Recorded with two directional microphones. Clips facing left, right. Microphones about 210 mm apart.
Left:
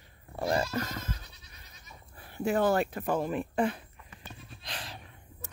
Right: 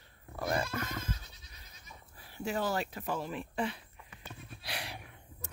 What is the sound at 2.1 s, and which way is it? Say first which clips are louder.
Speech: left 7 dB; 55° left (ahead or behind).